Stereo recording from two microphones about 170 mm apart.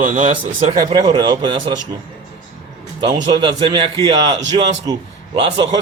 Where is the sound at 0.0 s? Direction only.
50° right (ahead or behind).